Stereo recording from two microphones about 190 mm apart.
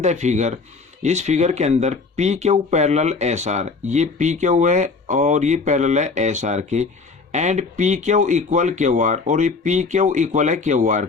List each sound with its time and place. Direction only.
0.0 s speech: 40° right (ahead or behind)